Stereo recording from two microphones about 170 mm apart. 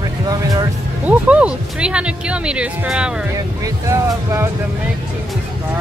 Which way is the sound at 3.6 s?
15° right (ahead or behind).